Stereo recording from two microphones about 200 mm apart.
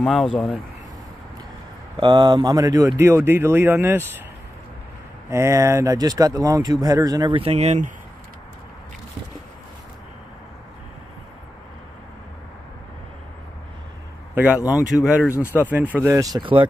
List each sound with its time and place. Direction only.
0.0 s speech: centre (ahead or behind)
2.0 s speech: 25° right (ahead or behind)
5.3 s speech: 15° right (ahead or behind); by 7.9 s 35° right (ahead or behind)
14.3 s a sound: 10° right (ahead or behind)
15.0 s speech: 5° right (ahead or behind); by 16.6 s 25° right (ahead or behind)